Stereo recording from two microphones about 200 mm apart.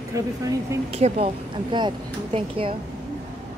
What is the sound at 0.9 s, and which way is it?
Speech, 30° right (ahead or behind).